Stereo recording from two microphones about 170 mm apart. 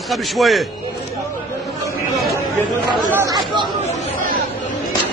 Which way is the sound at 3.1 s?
20° right (ahead or behind).